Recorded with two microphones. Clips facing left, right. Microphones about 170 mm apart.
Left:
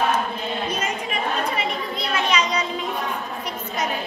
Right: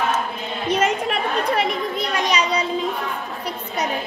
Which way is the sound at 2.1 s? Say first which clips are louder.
Even; 35° right (ahead or behind).